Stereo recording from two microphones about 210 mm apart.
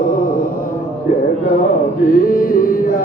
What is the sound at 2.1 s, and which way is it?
Music, 40° left (ahead or behind).